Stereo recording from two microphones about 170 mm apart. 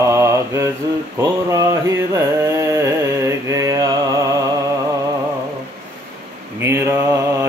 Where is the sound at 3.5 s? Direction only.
20° right (ahead or behind).